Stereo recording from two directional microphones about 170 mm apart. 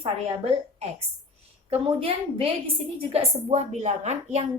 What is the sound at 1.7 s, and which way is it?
A woman's voice, 35° right (ahead or behind).